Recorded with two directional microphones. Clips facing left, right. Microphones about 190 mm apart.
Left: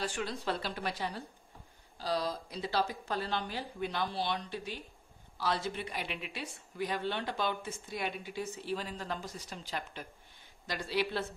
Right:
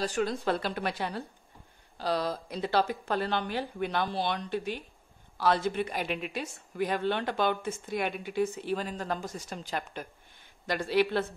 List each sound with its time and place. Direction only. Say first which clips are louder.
0.0 s a woman's voice: right 7 dB; 45° right (ahead or behind)